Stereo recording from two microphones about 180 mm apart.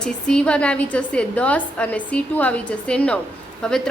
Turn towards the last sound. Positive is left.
turn(degrees=5)  # may be behind; listen again after turning